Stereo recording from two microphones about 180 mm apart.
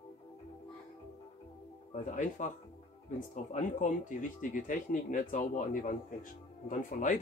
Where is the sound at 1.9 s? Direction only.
45° left (ahead or behind).